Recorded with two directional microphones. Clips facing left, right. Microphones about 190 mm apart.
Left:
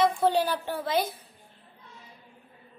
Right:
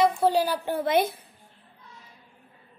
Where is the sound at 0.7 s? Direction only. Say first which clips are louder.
Right 6 dB; 55° right (ahead or behind).